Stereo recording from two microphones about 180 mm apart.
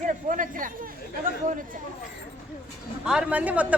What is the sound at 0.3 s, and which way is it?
Speech, 45° right (ahead or behind).